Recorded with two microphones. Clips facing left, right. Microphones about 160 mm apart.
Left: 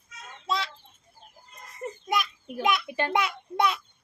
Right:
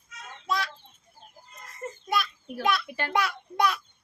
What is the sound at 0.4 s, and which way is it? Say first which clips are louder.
Chicken: even; 25° left (ahead or behind).